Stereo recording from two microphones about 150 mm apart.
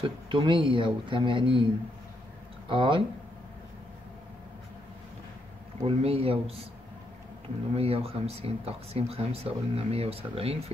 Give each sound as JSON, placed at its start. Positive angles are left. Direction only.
{"t": 0.0, "sound": "speech", "side_deg": -35}
{"t": 2.7, "sound": "speech", "side_deg": -35}
{"t": 5.9, "sound": "speech", "side_deg": -40}
{"t": 7.7, "sound": "speech", "side_deg": -40}